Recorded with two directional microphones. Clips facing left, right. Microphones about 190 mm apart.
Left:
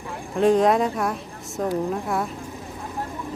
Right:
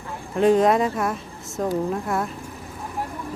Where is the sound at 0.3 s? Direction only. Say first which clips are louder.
Right 1 dB; centre (ahead or behind).